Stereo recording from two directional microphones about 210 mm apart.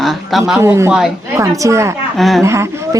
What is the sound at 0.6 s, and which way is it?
A woman's voice, 10° right (ahead or behind).